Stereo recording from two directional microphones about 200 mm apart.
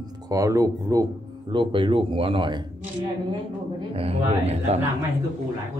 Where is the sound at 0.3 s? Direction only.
15° right (ahead or behind).